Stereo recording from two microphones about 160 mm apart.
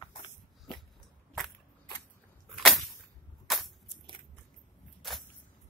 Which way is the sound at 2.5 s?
Centre (ahead or behind).